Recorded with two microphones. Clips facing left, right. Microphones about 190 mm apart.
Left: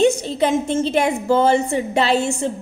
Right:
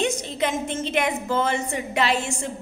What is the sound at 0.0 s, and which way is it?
A woman's voice, 30° left (ahead or behind).